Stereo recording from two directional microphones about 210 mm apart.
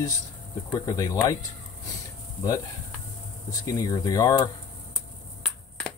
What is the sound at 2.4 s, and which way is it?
Speech, 15° left (ahead or behind).